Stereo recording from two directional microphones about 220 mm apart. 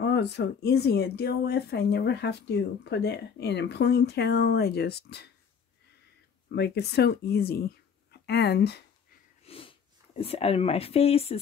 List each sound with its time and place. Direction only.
0.0 s speech: 50° left (ahead or behind)
6.5 s speech: 50° left (ahead or behind)
9.4 s speech: 25° left (ahead or behind)